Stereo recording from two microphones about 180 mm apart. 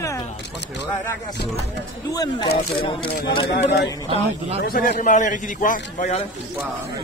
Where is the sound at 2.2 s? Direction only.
25° left (ahead or behind).